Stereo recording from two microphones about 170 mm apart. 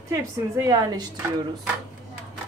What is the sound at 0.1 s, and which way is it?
Speech, 20° right (ahead or behind).